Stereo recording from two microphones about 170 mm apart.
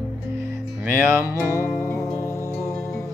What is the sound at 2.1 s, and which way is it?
Music, 15° left (ahead or behind).